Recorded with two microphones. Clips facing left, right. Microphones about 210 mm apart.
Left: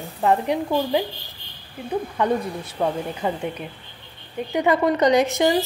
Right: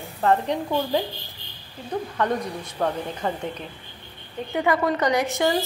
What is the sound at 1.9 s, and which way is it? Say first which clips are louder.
A woman's voice: left 3 dB; 10° left (ahead or behind).